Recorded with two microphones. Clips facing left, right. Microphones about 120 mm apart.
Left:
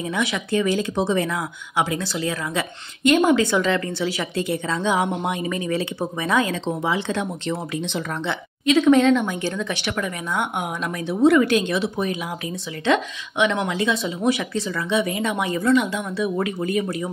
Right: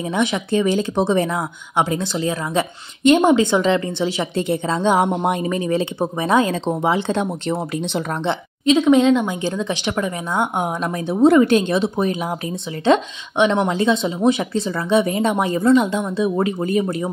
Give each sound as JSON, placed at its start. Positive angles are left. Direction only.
{"t": 0.1, "sound": "speech", "side_deg": -25}
{"t": 8.7, "sound": "speech", "side_deg": -15}